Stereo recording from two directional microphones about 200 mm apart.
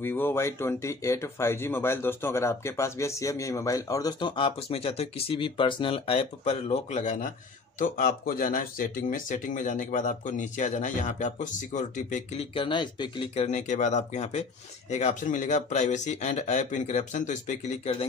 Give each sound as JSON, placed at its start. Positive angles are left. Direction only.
{"t": 0.0, "sound": "speech", "side_deg": 10}
{"t": 12.5, "sound": "speech", "side_deg": 25}